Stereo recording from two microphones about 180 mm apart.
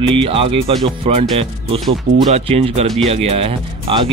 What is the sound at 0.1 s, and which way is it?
Speech, 30° right (ahead or behind).